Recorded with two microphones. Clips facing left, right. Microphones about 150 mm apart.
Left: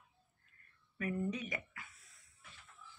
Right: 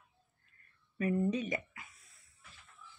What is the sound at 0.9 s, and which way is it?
Speech, 25° right (ahead or behind).